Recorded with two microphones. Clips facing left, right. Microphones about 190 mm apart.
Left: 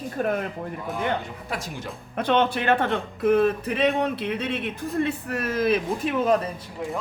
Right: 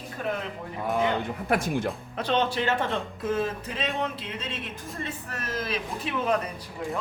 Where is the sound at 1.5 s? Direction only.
55° right (ahead or behind).